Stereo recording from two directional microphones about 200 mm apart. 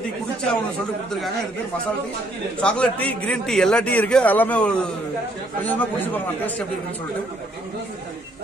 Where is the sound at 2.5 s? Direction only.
5° left (ahead or behind).